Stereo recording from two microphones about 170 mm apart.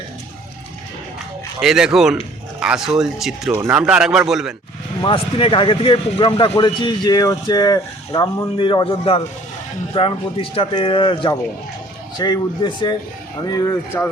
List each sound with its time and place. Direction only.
1.6 s speech: 5° right (ahead or behind)
5.0 s speech: 30° left (ahead or behind)